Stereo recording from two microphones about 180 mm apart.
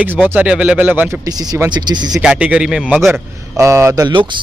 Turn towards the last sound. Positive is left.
turn(degrees=-20)  # may be behind; listen again after turning